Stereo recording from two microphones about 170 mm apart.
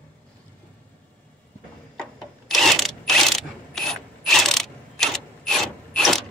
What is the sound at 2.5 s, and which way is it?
Mechanisms, centre (ahead or behind).